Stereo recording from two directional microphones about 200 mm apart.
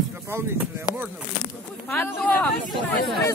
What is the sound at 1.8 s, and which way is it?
Speech, 10° left (ahead or behind).